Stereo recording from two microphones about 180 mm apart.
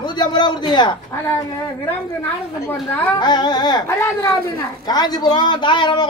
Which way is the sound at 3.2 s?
25° left (ahead or behind).